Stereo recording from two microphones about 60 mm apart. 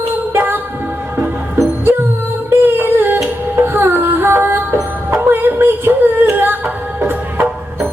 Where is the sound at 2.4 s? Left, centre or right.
Right.